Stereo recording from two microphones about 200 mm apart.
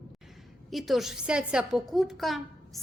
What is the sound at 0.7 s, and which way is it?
A woman's voice, centre (ahead or behind).